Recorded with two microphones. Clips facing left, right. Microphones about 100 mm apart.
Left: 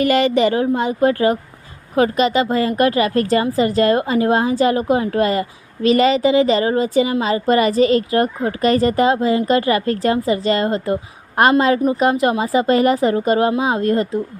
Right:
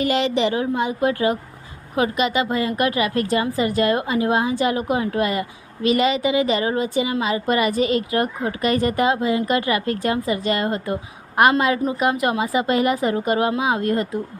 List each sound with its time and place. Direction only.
0.0 s a woman's voice: 55° left (ahead or behind); by 10.9 s 30° left (ahead or behind)
11.9 s a woman's voice: 30° left (ahead or behind)